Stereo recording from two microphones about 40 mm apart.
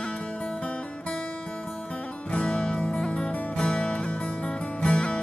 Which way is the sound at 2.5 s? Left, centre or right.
Left.